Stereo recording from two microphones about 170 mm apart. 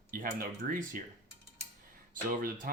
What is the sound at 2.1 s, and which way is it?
Speech, 55° right (ahead or behind).